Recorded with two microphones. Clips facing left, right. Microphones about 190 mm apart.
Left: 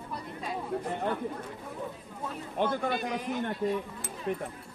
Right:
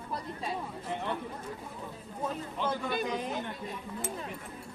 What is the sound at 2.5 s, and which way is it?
Speech, 55° left (ahead or behind).